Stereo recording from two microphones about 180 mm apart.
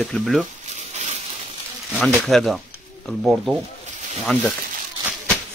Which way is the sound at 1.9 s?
Centre (ahead or behind).